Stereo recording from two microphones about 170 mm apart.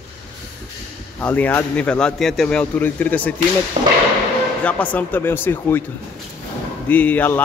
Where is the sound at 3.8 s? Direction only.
35° right (ahead or behind).